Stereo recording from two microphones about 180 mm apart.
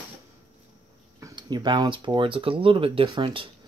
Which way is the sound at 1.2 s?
20° right (ahead or behind).